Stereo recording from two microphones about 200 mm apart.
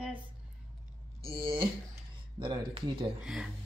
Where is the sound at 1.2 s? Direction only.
25° right (ahead or behind).